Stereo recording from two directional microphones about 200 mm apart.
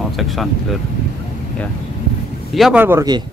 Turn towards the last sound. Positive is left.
turn(degrees=-15)  # may be behind; listen again after turning